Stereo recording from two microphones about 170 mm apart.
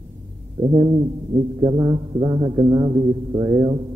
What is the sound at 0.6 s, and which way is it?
A man's voice, 25° right (ahead or behind).